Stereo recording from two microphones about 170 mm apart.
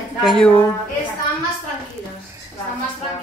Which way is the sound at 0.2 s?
Centre (ahead or behind).